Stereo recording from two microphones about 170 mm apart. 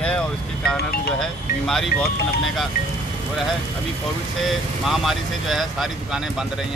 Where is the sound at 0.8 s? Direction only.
65° left (ahead or behind).